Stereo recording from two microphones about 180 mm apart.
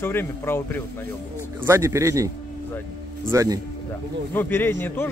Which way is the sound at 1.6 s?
15° right (ahead or behind).